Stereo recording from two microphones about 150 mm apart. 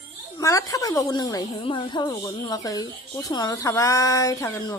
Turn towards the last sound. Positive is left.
turn(degrees=20)  # may be behind; listen again after turning